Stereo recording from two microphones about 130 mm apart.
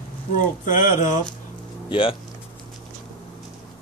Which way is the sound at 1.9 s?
45° left (ahead or behind).